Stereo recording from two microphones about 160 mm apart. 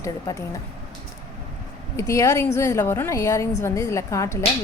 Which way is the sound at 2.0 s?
20° left (ahead or behind).